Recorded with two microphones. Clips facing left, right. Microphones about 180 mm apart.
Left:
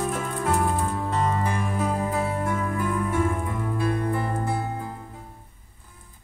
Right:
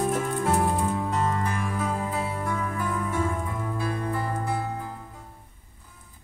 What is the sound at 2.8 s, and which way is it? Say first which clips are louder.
Music: left 4 dB; 50° left (ahead or behind).